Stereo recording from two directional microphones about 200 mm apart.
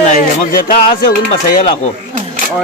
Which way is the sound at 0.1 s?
45° left (ahead or behind).